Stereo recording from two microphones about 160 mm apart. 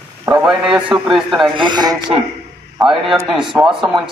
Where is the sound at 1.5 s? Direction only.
30° right (ahead or behind).